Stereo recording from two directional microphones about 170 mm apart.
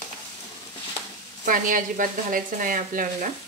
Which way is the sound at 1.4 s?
50° right (ahead or behind).